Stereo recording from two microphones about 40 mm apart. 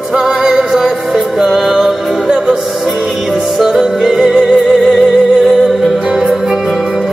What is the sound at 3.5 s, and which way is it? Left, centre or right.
Music, centre.